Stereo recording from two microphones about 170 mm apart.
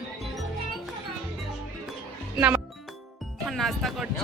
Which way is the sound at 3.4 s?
Centre (ahead or behind).